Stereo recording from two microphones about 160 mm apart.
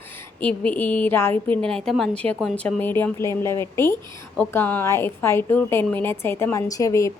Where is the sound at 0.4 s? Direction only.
10° left (ahead or behind).